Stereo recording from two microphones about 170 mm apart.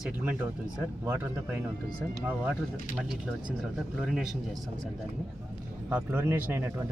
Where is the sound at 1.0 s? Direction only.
15° right (ahead or behind).